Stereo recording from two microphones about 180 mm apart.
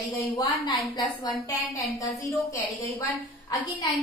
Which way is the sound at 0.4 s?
20° left (ahead or behind).